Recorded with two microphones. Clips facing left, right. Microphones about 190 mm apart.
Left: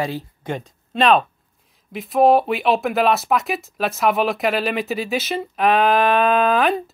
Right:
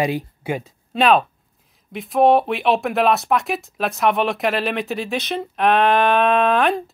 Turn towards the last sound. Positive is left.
turn(degrees=0)  # may be behind; listen again after turning